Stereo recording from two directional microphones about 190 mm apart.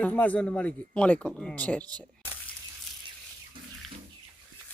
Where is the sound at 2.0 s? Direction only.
20° right (ahead or behind).